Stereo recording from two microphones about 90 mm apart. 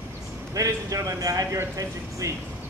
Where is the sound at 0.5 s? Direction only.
40° right (ahead or behind).